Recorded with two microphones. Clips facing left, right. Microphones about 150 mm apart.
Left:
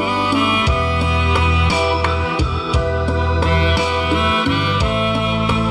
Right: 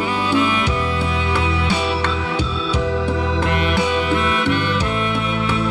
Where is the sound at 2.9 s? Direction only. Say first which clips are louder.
Left 1 dB; 20° right (ahead or behind).